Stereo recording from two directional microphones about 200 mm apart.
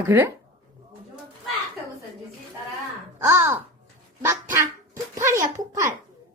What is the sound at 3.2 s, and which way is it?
Speech, 10° right (ahead or behind).